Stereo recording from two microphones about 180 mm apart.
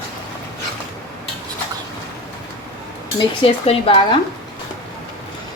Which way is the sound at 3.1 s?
30° left (ahead or behind).